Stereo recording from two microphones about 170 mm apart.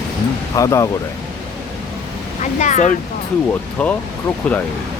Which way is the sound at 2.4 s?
45° left (ahead or behind).